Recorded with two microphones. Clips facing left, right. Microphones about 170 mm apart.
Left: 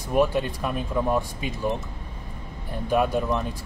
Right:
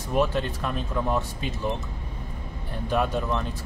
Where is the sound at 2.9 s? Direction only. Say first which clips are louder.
Left 3 dB; 10° left (ahead or behind).